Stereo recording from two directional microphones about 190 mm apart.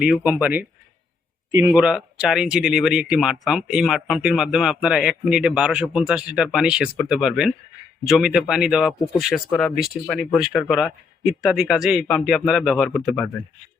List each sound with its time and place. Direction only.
0.0 s speech: 5° right (ahead or behind)
1.5 s speech: 20° right (ahead or behind)
1.7 s speech: 5° right (ahead or behind)